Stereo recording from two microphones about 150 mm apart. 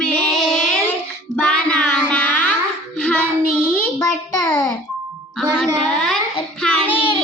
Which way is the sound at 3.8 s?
20° left (ahead or behind).